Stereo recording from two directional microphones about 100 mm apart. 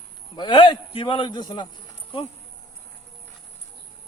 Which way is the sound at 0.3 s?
50° left (ahead or behind).